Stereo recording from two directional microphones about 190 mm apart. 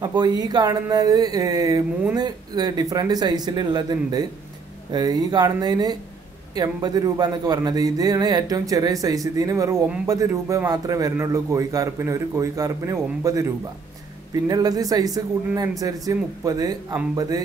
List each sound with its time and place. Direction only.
0.0 s a man's voice: 20° right (ahead or behind)
14.5 s speech: 20° right (ahead or behind)